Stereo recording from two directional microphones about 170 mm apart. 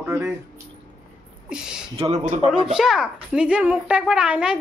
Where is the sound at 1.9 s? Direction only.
40° right (ahead or behind).